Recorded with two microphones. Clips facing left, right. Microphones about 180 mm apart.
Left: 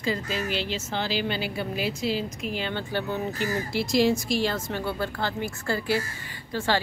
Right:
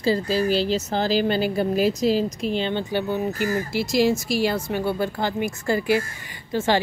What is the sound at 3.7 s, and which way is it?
A woman's voice, centre (ahead or behind).